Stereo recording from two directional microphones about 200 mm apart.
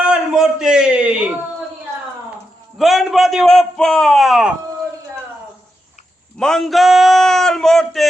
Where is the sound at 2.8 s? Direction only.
Centre (ahead or behind).